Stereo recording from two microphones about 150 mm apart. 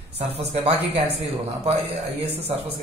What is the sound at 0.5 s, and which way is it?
Speech, 40° right (ahead or behind).